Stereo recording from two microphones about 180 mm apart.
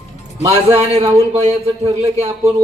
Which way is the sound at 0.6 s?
35° right (ahead or behind).